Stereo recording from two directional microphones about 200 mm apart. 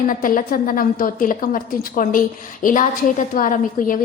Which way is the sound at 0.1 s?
45° left (ahead or behind).